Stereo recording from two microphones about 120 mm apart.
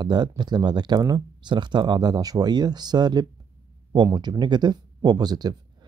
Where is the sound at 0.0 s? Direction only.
35° right (ahead or behind).